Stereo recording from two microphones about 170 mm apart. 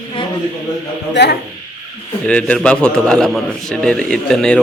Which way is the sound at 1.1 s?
80° left.